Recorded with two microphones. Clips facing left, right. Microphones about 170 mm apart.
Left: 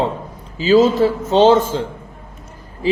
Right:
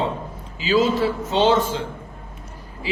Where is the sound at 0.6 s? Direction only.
40° left (ahead or behind).